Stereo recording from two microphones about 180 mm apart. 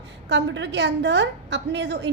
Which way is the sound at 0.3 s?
85° right.